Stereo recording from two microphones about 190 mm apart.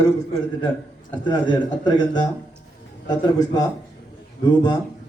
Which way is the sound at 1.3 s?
20° left (ahead or behind).